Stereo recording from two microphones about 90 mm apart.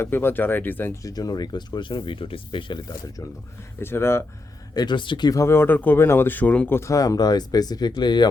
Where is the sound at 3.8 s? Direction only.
25° left (ahead or behind).